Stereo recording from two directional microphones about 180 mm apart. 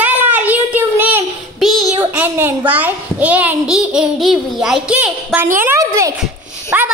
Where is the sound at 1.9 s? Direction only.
10° right (ahead or behind).